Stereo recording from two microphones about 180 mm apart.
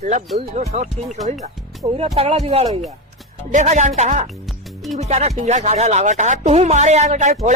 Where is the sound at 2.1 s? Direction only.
35° right (ahead or behind).